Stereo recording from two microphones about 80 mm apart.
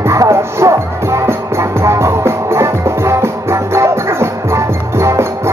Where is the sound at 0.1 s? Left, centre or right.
Right.